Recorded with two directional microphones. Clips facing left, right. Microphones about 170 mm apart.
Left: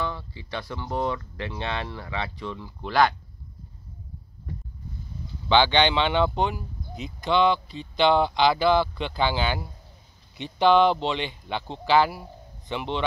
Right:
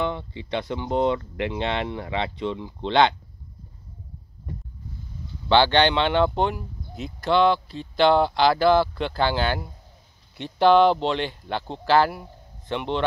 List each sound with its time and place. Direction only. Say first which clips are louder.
0.0 s speech: right 4 dB; 25° right (ahead or behind)
5.7 s speech: right 2 dB; centre (ahead or behind)